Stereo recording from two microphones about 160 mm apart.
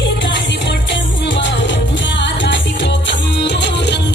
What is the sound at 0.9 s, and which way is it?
Music, 90° left.